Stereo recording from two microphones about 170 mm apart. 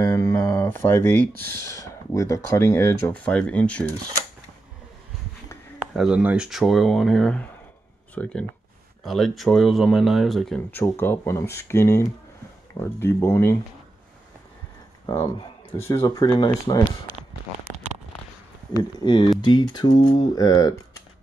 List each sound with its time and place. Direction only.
0.0 s a sound: 20° left (ahead or behind)
0.6 s speech: 10° left (ahead or behind)
1.2 s speech: 60° right (ahead or behind)
1.7 s speech: 20° left (ahead or behind)
5.9 s speech: 5° right (ahead or behind); by 13.6 s 15° left (ahead or behind)
15.0 s speech: 25° left (ahead or behind)
18.8 s speech: 30° left (ahead or behind)